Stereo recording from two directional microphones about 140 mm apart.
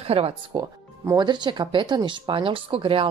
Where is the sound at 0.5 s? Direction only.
25° right (ahead or behind).